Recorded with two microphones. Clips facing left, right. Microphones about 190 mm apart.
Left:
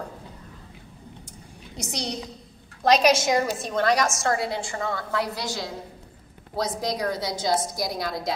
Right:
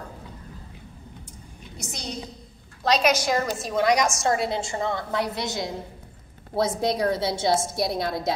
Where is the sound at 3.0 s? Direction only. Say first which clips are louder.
Left 2 dB; 25° left (ahead or behind).